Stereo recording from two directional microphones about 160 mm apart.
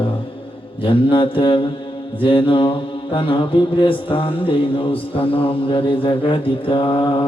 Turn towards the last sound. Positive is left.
turn(degrees=30)  # may be behind; listen again after turning